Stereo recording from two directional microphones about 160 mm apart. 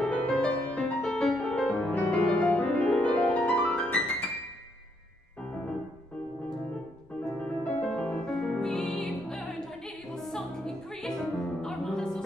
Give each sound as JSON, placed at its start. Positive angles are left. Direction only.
{"t": 0.0, "sound": "music", "side_deg": 5}
{"t": 7.2, "sound": "music", "side_deg": 5}